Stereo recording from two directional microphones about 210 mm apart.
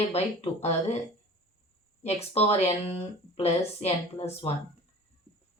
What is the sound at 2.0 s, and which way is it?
Speech, 30° left (ahead or behind).